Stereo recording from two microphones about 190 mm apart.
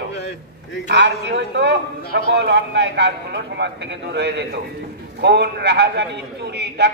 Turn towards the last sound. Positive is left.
turn(degrees=-65)  # may be behind; listen again after turning